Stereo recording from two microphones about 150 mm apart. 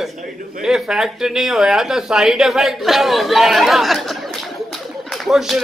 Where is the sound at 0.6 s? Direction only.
5° right (ahead or behind).